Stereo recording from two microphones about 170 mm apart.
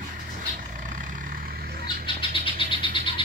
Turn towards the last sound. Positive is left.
turn(degrees=30)  # may be behind; listen again after turning